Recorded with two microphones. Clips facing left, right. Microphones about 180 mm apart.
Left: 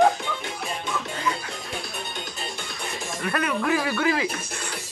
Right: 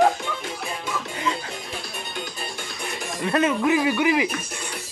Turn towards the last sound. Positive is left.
turn(degrees=-15)  # may be behind; listen again after turning